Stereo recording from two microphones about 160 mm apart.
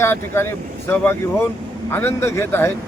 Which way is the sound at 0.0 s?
15° left (ahead or behind).